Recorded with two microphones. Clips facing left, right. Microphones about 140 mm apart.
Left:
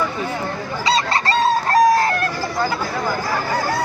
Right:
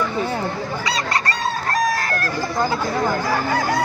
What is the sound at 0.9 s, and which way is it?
Chicken, 25° left (ahead or behind).